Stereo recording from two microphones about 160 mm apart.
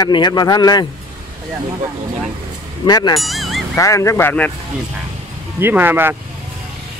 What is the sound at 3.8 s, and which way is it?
Speech, 20° left (ahead or behind).